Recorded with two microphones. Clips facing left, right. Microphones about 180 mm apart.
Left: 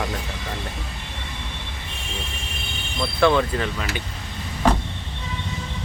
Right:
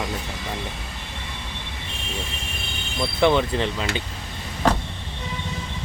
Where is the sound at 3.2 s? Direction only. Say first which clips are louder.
Even; 20° right (ahead or behind).